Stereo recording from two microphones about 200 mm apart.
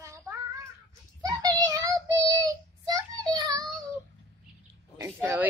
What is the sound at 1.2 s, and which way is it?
Child singing, 20° right (ahead or behind).